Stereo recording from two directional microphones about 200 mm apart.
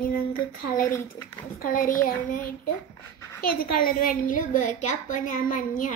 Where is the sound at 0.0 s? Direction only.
45° left (ahead or behind).